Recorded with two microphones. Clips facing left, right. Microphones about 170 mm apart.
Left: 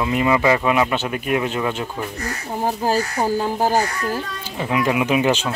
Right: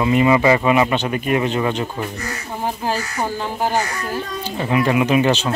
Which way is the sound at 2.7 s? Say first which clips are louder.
Left 3 dB; 35° left (ahead or behind).